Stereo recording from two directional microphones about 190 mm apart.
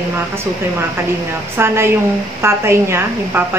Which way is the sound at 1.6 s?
10° right (ahead or behind).